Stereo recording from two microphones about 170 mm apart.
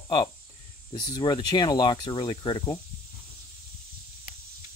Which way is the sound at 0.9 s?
25° left (ahead or behind).